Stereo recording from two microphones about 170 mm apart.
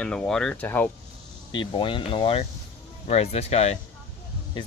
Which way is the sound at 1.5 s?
30° left (ahead or behind).